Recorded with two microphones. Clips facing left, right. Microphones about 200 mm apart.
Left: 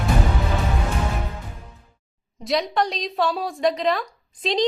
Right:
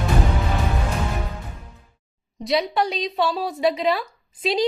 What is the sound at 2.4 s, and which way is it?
A woman's voice, 5° right (ahead or behind).